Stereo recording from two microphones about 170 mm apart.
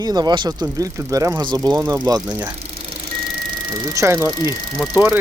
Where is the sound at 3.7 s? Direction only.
15° right (ahead or behind).